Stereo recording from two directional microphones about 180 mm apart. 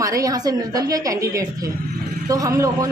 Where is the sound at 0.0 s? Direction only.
20° right (ahead or behind).